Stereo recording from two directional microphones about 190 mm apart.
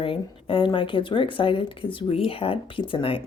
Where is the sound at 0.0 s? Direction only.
30° left (ahead or behind).